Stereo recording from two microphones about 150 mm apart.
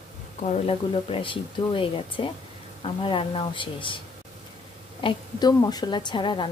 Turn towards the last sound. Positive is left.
turn(degrees=30)  # may be behind; listen again after turning